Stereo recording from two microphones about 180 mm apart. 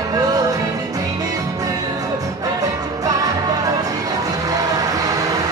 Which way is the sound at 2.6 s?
20° right (ahead or behind).